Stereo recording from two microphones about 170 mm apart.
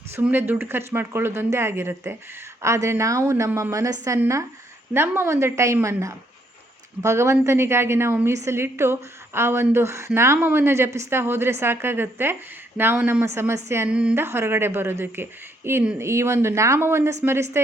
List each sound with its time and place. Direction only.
0.2 s a woman's voice: 10° right (ahead or behind)